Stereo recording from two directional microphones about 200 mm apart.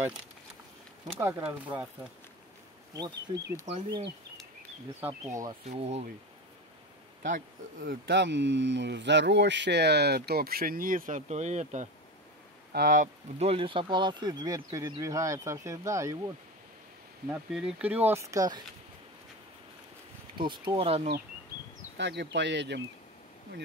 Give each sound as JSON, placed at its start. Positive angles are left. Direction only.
{"t": 1.0, "sound": "speech", "side_deg": -10}
{"t": 2.9, "sound": "speech", "side_deg": -20}
{"t": 5.7, "sound": "speech", "side_deg": -30}
{"t": 7.2, "sound": "speech", "side_deg": -45}
{"t": 17.3, "sound": "speech", "side_deg": -5}
{"t": 20.3, "sound": "speech", "side_deg": -25}
{"t": 21.9, "sound": "speech", "side_deg": -60}